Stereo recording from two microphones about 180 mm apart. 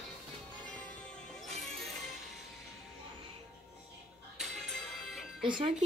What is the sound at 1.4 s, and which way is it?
Music, centre (ahead or behind).